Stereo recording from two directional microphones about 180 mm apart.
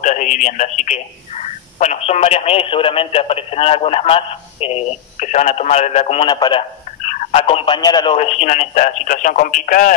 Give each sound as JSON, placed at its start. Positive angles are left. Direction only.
{"t": 0.0, "sound": "speech", "side_deg": 45}
{"t": 7.1, "sound": "speech", "side_deg": 40}
{"t": 8.2, "sound": "speech", "side_deg": 35}